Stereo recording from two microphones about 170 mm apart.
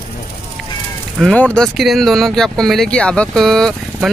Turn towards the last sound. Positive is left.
turn(degrees=5)  # may be behind; listen again after turning